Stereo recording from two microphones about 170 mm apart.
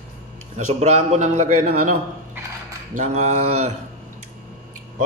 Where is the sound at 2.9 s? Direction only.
45° right (ahead or behind).